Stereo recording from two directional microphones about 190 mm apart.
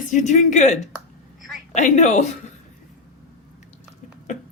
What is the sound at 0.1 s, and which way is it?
Speech, 40° left (ahead or behind).